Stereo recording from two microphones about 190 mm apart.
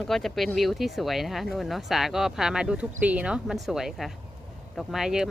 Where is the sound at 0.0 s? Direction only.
Centre (ahead or behind).